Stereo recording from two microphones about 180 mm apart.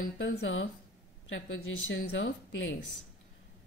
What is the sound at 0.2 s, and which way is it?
A woman's voice, 90° left.